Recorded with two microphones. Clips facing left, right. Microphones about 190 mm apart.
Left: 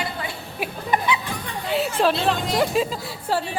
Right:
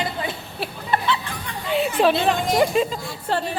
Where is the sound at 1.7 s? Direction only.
Centre (ahead or behind).